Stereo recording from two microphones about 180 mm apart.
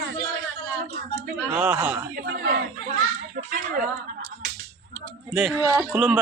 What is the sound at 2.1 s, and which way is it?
Speech, 60° right (ahead or behind).